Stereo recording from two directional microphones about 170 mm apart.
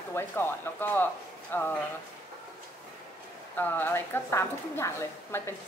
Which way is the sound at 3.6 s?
10° left (ahead or behind).